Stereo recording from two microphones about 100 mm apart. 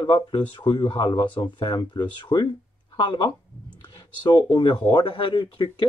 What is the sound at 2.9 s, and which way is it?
Speech, 55° left (ahead or behind).